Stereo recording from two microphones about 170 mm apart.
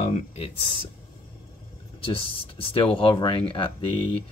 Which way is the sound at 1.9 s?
30° left (ahead or behind).